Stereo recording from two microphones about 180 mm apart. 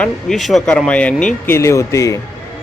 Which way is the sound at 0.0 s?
Centre (ahead or behind).